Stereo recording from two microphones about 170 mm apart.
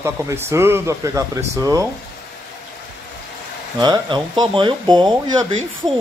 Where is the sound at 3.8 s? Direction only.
25° right (ahead or behind).